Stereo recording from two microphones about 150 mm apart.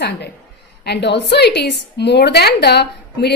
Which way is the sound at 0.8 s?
90° left.